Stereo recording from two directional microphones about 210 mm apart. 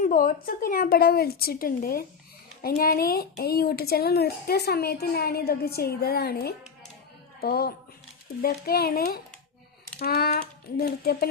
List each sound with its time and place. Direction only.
0.0 s speech: 40° left (ahead or behind)